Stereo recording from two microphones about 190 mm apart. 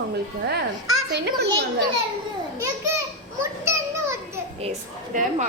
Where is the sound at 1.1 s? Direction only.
65° right (ahead or behind).